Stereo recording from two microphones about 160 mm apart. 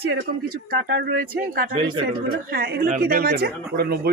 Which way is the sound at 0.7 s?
75° right (ahead or behind).